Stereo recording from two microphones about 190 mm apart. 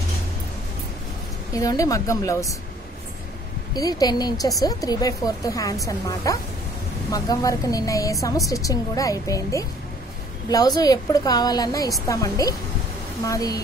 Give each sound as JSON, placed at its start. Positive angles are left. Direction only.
{"t": 1.5, "sound": "speech", "side_deg": 20}
{"t": 3.7, "sound": "a woman's voice", "side_deg": 20}